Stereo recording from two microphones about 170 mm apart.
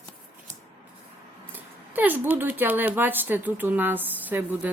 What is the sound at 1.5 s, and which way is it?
Speech, 10° right (ahead or behind).